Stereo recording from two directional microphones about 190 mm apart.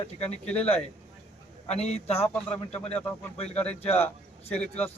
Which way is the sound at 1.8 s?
35° left (ahead or behind).